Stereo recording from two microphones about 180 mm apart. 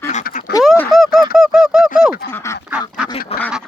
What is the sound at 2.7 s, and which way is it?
Duck, 5° right (ahead or behind).